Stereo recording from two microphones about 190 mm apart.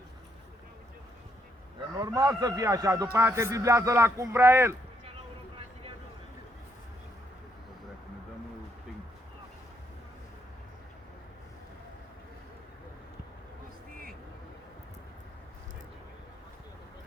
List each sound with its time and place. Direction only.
2.0 s a man's voice: 20° right (ahead or behind)